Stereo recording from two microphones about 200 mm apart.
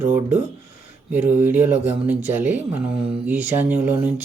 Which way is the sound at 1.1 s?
10° right (ahead or behind).